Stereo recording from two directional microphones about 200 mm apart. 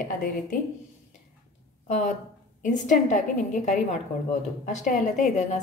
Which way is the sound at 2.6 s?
40° left (ahead or behind).